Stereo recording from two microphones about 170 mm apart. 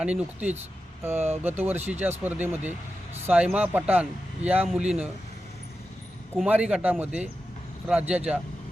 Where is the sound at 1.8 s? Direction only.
40° right (ahead or behind).